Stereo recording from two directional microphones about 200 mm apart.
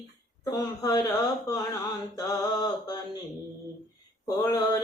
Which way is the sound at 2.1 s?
20° left (ahead or behind).